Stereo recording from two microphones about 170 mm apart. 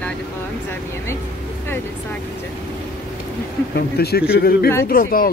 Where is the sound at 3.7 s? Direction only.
70° left (ahead or behind).